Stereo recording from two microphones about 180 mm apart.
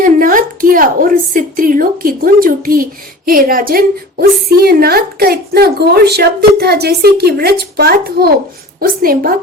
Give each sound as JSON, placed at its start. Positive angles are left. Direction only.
{"t": 0.0, "sound": "a woman's voice", "side_deg": -50}